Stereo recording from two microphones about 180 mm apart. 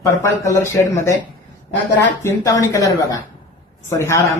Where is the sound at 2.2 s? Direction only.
15° left (ahead or behind).